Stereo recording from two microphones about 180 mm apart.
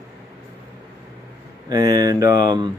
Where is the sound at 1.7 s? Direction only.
20° right (ahead or behind).